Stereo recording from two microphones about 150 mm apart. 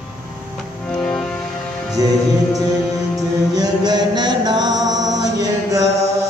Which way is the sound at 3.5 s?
25° right (ahead or behind).